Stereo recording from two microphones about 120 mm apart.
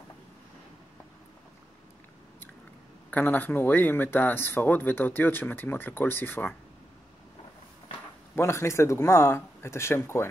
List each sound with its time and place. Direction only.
3.1 s speech: 15° left (ahead or behind)
8.4 s speech: 20° left (ahead or behind)